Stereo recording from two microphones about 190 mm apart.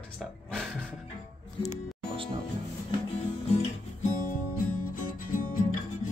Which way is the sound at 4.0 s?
45° left (ahead or behind).